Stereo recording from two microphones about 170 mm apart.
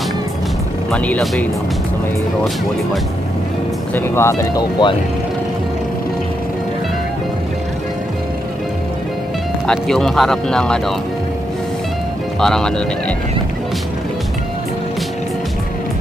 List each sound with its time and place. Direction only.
0.9 s speech: 5° left (ahead or behind)
3.9 s speech: 15° left (ahead or behind)
9.7 s speech: centre (ahead or behind)
12.4 s speech: 5° left (ahead or behind)